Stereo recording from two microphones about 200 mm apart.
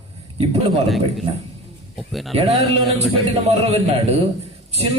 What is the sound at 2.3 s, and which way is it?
A man's voice, 30° right (ahead or behind).